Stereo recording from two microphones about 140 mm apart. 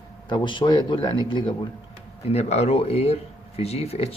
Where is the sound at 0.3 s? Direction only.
35° left (ahead or behind).